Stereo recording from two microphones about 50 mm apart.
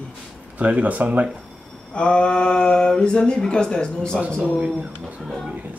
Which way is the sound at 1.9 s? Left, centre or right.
Left.